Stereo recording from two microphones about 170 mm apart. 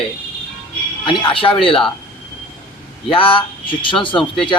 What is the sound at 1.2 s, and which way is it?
Speech, 30° left (ahead or behind).